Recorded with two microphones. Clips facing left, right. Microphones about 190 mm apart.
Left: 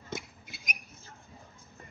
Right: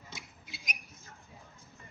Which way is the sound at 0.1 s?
50° left (ahead or behind).